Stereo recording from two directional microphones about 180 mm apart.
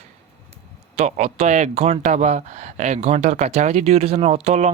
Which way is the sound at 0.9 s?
35° right (ahead or behind).